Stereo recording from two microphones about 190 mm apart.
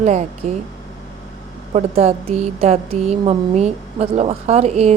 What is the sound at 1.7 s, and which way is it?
A woman's voice, 30° right (ahead or behind).